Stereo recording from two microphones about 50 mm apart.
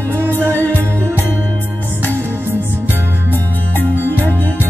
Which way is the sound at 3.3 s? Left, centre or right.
Left.